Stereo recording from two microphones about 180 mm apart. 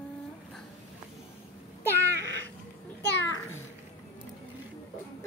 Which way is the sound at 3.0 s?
70° left (ahead or behind).